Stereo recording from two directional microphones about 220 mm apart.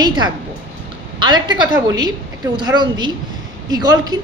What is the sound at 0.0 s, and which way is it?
A woman's voice, 20° right (ahead or behind).